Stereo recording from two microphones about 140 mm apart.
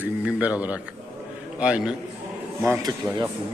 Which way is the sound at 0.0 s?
10° right (ahead or behind).